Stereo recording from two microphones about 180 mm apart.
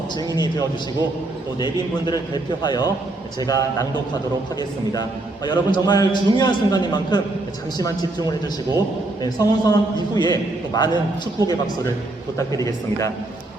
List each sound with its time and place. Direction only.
1.5 s a man's voice: 25° left (ahead or behind)
5.5 s a man's voice: 20° left (ahead or behind)
9.2 s a man's voice: 20° left (ahead or behind)
12.4 s speech: 20° left (ahead or behind)